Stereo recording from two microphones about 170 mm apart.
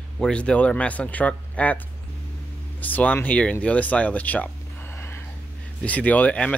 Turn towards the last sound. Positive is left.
turn(degrees=10)  # may be behind; listen again after turning